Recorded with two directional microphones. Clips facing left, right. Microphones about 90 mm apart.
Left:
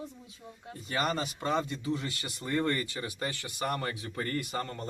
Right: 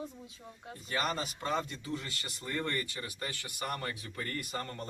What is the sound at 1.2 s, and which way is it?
Speech, 25° left (ahead or behind).